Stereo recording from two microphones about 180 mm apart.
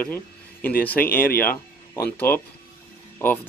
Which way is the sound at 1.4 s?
10° left (ahead or behind).